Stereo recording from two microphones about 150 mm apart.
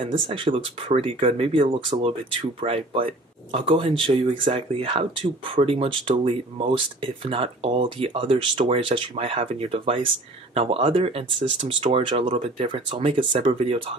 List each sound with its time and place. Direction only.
0.0 s speech: 35° right (ahead or behind)